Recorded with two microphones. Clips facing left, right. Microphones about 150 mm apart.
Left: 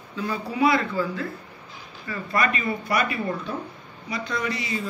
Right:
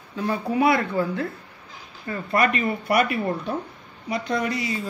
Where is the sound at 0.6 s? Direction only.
60° right (ahead or behind).